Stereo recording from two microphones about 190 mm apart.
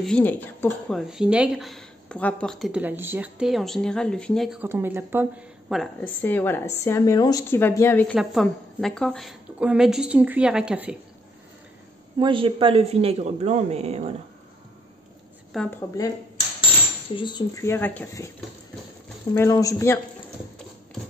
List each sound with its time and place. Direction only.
0.0 s speech: 5° left (ahead or behind)
4.6 s speech: 10° right (ahead or behind)
6.2 s a woman's voice: 10° left (ahead or behind); by 11.0 s 5° right (ahead or behind)
12.2 s a man's voice: 25° right (ahead or behind)
15.5 s a woman's voice: 5° left (ahead or behind)
17.1 s a woman's voice: 25° left (ahead or behind)
19.3 s a woman's voice: 15° left (ahead or behind)